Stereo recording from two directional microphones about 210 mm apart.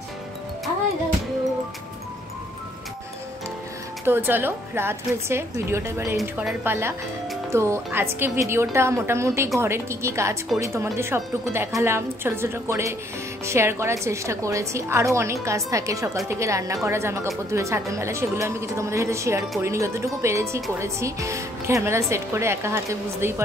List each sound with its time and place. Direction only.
4.0 s a woman's voice: 10° right (ahead or behind)